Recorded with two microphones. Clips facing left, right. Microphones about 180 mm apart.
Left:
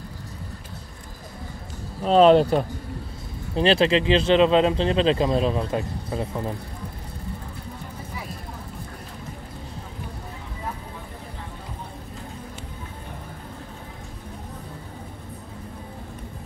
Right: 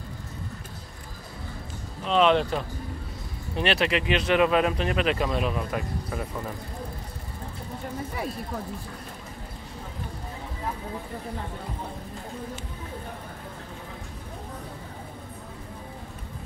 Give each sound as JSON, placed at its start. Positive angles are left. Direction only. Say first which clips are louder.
{"t": 2.0, "sound": "speech", "louder": "left 6 dB", "side_deg": 40}